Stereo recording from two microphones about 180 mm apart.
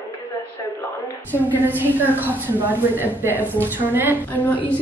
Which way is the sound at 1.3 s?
10° right (ahead or behind).